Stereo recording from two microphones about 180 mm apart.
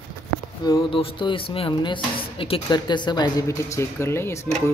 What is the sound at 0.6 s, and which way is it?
Speech, 30° left (ahead or behind).